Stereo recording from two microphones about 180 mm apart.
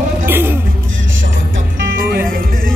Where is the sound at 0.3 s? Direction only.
10° right (ahead or behind).